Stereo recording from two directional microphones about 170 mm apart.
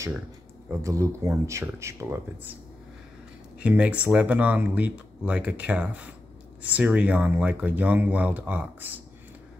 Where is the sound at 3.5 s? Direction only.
10° right (ahead or behind).